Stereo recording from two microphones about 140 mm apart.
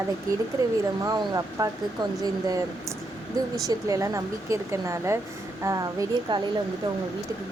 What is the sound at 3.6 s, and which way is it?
Speech, 25° right (ahead or behind).